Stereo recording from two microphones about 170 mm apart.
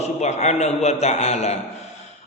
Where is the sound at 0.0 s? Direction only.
40° left (ahead or behind).